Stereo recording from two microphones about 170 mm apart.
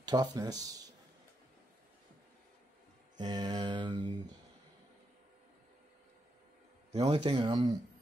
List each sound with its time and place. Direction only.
0.0 s speech: 25° right (ahead or behind)
3.2 s mantra: 25° right (ahead or behind)
6.9 s speech: 40° right (ahead or behind)